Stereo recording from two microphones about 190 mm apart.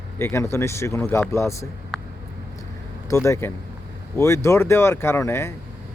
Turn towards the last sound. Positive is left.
turn(degrees=15)  # may be behind; listen again after turning